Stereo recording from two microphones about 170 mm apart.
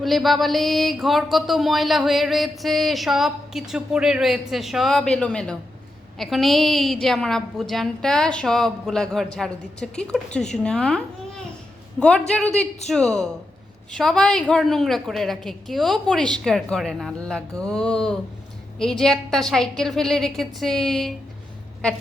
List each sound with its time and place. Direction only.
0.0 s speech: centre (ahead or behind)